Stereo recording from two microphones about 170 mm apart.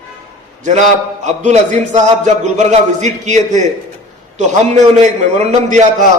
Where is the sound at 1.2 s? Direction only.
45° right (ahead or behind).